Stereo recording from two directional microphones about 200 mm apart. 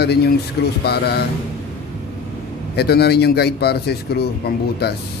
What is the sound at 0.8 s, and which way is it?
Speech, 55° left (ahead or behind).